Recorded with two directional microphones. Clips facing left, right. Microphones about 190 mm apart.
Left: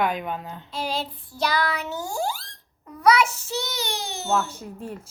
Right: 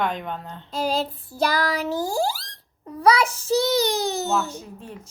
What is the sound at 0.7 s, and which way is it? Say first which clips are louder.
Child singing: right 5 dB; 40° right (ahead or behind).